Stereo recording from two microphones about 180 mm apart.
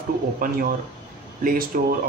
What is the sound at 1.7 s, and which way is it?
Speech, 50° right (ahead or behind).